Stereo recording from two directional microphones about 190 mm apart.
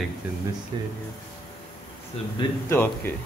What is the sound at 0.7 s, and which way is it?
Speech, 25° right (ahead or behind).